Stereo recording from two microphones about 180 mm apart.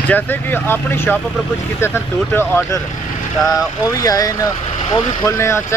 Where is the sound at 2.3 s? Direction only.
15° left (ahead or behind).